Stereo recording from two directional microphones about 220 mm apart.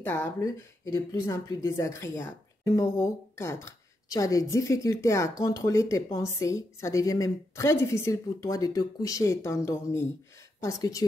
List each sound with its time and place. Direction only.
0.0 s a woman's voice: 10° left (ahead or behind)